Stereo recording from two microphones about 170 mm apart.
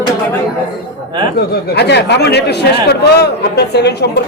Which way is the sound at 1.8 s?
80° left.